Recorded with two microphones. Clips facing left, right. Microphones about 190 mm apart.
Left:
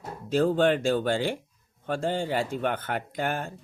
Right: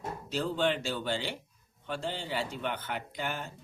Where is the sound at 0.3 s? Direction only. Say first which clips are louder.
Left 8 dB; 50° left (ahead or behind).